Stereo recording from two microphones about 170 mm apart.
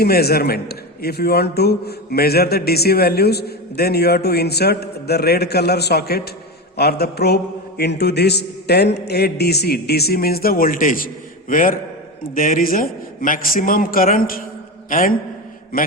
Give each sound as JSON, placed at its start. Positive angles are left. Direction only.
{"t": 0.0, "sound": "a man's voice", "side_deg": 65}